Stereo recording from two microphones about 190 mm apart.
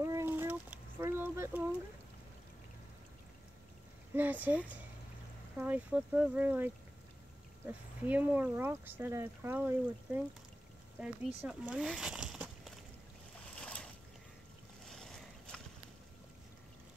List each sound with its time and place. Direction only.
0.0 s a sound: 15° right (ahead or behind)
4.1 s speech: 10° right (ahead or behind)
13.6 s boat: 5° left (ahead or behind)
14.9 s boat: centre (ahead or behind)